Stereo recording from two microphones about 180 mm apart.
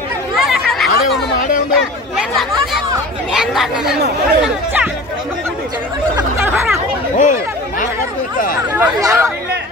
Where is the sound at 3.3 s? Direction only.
5° right (ahead or behind).